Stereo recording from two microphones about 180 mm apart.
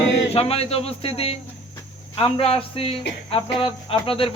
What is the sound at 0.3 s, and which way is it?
Cricket, 35° left (ahead or behind).